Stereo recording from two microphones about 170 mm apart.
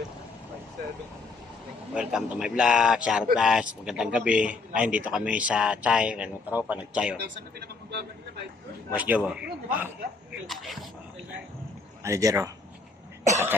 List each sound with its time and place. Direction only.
1.9 s speech: 5° right (ahead or behind)
8.9 s speech: 10° right (ahead or behind)
12.0 s speech: 20° right (ahead or behind)